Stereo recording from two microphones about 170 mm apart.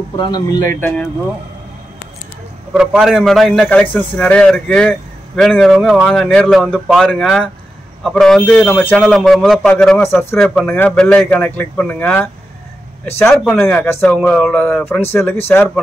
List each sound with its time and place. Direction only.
0.2 s speech: 25° left (ahead or behind)
0.7 s speech: 10° left (ahead or behind)
2.7 s a man's voice: 5° right (ahead or behind)